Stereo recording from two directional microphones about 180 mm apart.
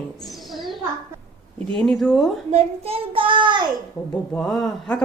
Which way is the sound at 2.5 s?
35° right (ahead or behind).